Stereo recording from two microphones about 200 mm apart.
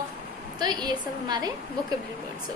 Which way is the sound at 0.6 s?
20° right (ahead or behind).